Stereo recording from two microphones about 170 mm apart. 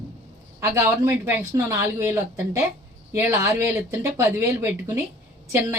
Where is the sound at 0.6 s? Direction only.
15° right (ahead or behind).